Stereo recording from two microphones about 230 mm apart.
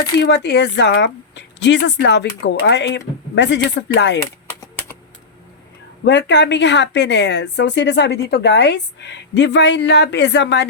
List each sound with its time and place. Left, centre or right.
0.2 s speech: left
6.1 s speech: left